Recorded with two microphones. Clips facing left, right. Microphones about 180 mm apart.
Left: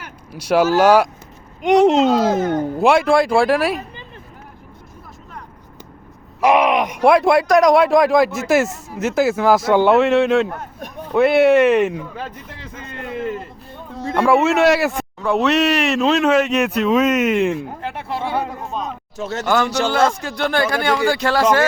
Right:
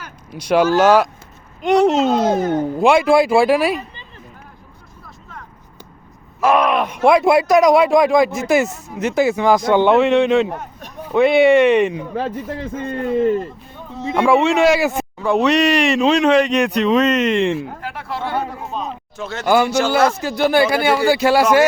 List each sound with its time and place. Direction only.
0.3 s speech: 5° left (ahead or behind)
2.0 s speech: 20° right (ahead or behind)
2.5 s speech: 10° right (ahead or behind)
2.8 s speech: centre (ahead or behind)
6.4 s speech: 15° left (ahead or behind)
7.1 s speech: centre (ahead or behind)
12.1 s a man's voice: 40° right (ahead or behind)
12.9 s a man's voice: 35° right (ahead or behind)
14.1 s speech: centre (ahead or behind)
17.8 s speech: 20° left (ahead or behind)
18.4 s a sound: centre (ahead or behind)
19.1 s speech: 40° left (ahead or behind)
19.5 s speech: 10° right (ahead or behind)